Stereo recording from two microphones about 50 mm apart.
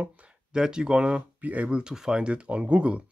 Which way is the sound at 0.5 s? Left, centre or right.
Centre.